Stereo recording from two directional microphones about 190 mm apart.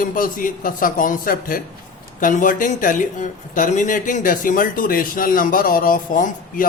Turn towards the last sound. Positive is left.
turn(degrees=45)  # may be behind; listen again after turning